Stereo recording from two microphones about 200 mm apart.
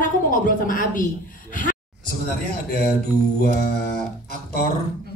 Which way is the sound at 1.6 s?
45° left (ahead or behind).